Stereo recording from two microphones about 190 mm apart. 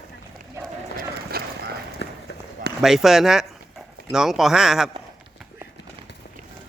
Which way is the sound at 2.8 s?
Centre (ahead or behind).